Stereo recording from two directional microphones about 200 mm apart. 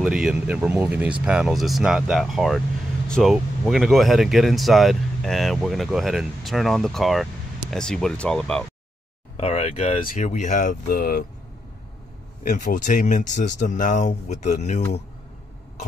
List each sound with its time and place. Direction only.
0.0 s speech: 5° right (ahead or behind)
9.4 s speech: 30° left (ahead or behind); by 11.2 s 45° left (ahead or behind)
12.4 s speech: 40° left (ahead or behind)